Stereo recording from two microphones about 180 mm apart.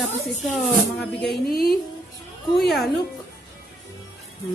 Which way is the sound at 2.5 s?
Centre (ahead or behind).